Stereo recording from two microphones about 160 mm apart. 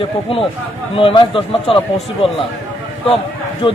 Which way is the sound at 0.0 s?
35° left (ahead or behind).